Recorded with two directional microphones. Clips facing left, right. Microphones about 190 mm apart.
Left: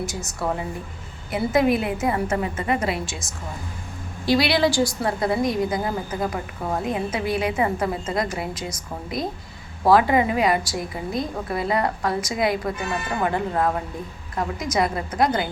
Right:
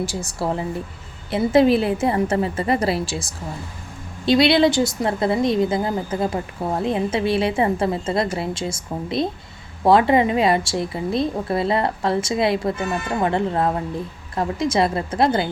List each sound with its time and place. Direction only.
0.0 s a woman's voice: 30° right (ahead or behind)
4.3 s a woman's voice: 25° right (ahead or behind)